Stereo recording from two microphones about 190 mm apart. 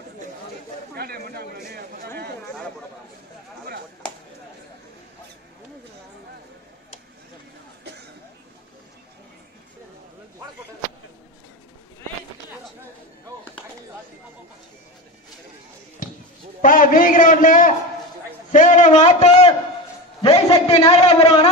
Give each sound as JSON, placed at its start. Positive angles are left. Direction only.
{"t": 0.9, "sound": "a man's voice", "side_deg": -55}
{"t": 16.6, "sound": "a man's voice", "side_deg": 45}
{"t": 18.5, "sound": "a sound", "side_deg": 40}
{"t": 20.9, "sound": "a man's voice", "side_deg": 30}